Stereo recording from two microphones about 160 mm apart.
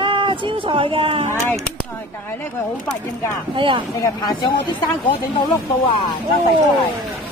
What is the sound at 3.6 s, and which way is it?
Speech, 30° right (ahead or behind).